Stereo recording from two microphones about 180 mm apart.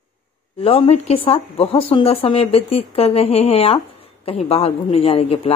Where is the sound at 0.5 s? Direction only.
30° left (ahead or behind).